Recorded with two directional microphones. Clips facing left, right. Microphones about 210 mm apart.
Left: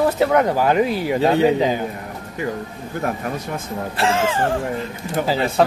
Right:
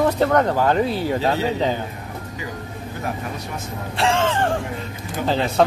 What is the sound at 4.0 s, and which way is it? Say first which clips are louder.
Speech: even; 5° left (ahead or behind).